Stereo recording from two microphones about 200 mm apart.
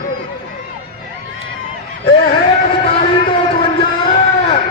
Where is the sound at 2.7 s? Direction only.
25° left (ahead or behind).